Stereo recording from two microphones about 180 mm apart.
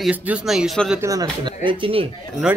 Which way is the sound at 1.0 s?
20° right (ahead or behind).